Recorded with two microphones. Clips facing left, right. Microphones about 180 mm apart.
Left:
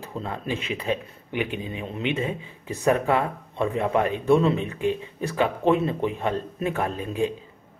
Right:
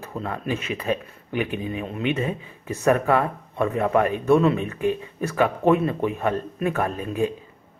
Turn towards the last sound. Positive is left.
turn(degrees=20)  # may be behind; listen again after turning